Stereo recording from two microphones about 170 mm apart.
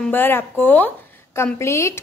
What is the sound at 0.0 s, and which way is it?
A woman's voice, 10° left (ahead or behind).